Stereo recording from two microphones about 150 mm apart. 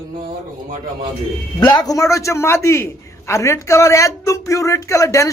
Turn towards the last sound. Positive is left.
turn(degrees=20)  # may be behind; listen again after turning